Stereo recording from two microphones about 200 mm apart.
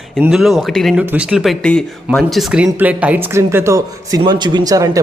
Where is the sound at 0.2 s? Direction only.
Centre (ahead or behind).